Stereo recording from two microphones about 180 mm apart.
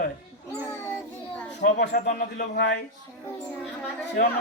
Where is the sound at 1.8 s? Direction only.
55° left (ahead or behind).